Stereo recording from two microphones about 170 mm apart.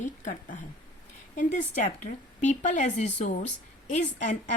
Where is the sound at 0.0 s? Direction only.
45° left (ahead or behind).